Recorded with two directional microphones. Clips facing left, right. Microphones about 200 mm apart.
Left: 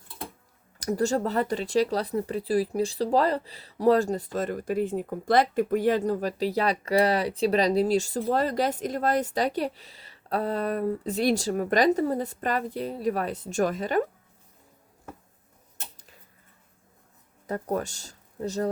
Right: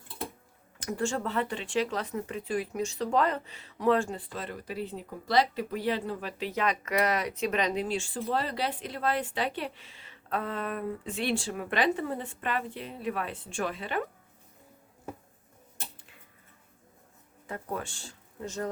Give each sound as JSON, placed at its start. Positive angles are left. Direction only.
{"t": 0.8, "sound": "speech", "side_deg": 40}
{"t": 17.4, "sound": "speech", "side_deg": 40}